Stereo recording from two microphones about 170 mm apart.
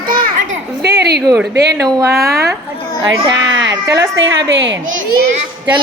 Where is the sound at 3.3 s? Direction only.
90° right.